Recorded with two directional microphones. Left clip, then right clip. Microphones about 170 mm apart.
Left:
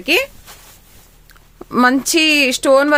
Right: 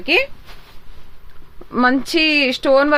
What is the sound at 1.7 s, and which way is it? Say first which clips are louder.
Speech: left 3 dB; 25° left (ahead or behind).